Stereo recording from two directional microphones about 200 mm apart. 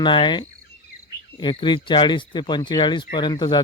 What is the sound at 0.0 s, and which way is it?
Speech, 25° left (ahead or behind).